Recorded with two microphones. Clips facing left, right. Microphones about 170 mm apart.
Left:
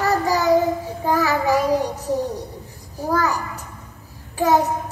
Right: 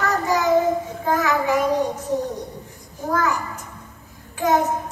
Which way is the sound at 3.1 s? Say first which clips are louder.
Left 1 dB; 35° left (ahead or behind).